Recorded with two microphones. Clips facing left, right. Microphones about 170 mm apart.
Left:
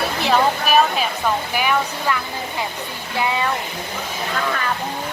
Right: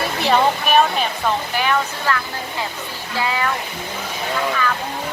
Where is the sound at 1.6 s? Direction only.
10° left (ahead or behind).